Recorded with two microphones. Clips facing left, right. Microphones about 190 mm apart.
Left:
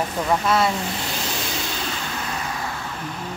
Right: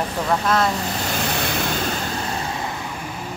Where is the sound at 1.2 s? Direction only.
60° right (ahead or behind).